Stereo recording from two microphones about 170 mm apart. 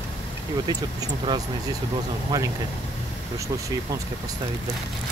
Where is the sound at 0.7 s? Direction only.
25° right (ahead or behind).